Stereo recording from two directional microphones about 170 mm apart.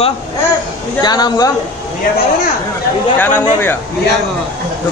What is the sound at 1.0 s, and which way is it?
Speech, 25° left (ahead or behind).